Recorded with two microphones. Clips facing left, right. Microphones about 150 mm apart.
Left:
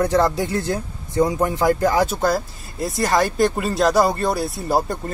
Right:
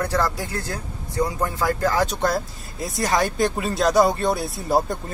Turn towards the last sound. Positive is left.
turn(degrees=0)  # may be behind; listen again after turning